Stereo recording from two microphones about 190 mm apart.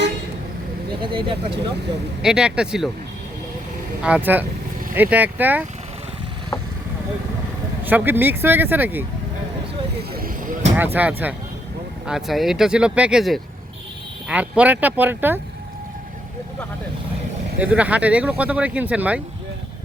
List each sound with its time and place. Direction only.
1.0 s speech: 25° right (ahead or behind)
2.2 s speech: 5° right (ahead or behind)
4.0 s speech: 10° right (ahead or behind)
7.9 s speech: 10° right (ahead or behind)
10.0 s vehicle: 50° right (ahead or behind)
10.9 s speech: 10° right (ahead or behind)
17.6 s speech: 5° right (ahead or behind)